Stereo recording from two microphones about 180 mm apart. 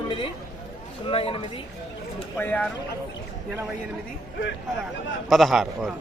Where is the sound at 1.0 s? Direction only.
30° left (ahead or behind).